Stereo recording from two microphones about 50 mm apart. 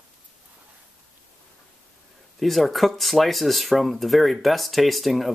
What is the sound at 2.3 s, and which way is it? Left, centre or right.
Speech, centre.